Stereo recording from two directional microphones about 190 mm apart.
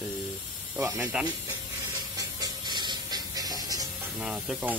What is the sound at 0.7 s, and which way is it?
Speech, 15° right (ahead or behind).